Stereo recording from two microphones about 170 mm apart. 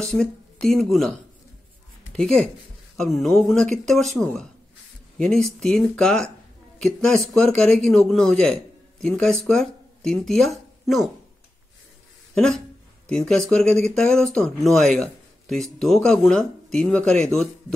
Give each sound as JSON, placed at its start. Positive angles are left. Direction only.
{"t": 0.0, "sound": "speech", "side_deg": 5}
{"t": 2.1, "sound": "speech", "side_deg": 0}
{"t": 12.4, "sound": "speech", "side_deg": 5}